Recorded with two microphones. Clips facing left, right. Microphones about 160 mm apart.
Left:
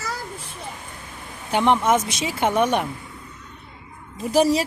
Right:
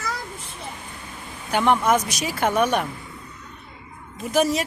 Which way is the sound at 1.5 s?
25° left (ahead or behind).